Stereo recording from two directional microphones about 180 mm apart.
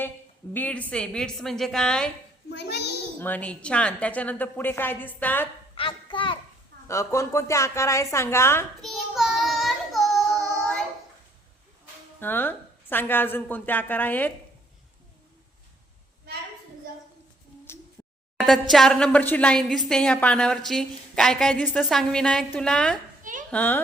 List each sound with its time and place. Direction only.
0.5 s a woman's voice: 10° left (ahead or behind)
2.5 s a child's voice: 70° left (ahead or behind)
3.2 s a woman's voice: 10° left (ahead or behind)
5.7 s a sound: 30° left (ahead or behind)
6.8 s a woman's voice: 15° left (ahead or behind)
8.8 s child singing: centre (ahead or behind)
12.2 s a woman's voice: 10° left (ahead or behind)
18.3 s a sound: centre (ahead or behind)
18.7 s a woman's voice: centre (ahead or behind)